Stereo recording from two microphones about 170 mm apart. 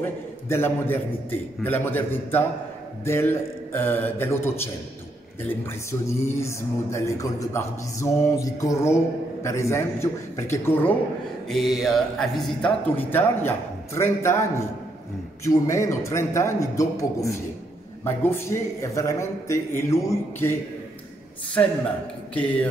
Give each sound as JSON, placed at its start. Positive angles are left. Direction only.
{"t": 0.0, "sound": "a man's voice", "side_deg": 15}
{"t": 5.4, "sound": "speech", "side_deg": 15}
{"t": 11.4, "sound": "speech", "side_deg": 0}
{"t": 15.4, "sound": "speech", "side_deg": 20}
{"t": 22.3, "sound": "speech", "side_deg": 10}